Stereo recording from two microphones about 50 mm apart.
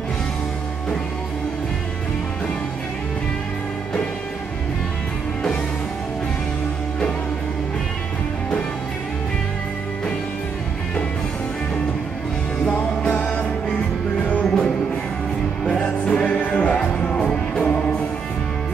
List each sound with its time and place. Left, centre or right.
14.3 s music: centre
15.8 s music: centre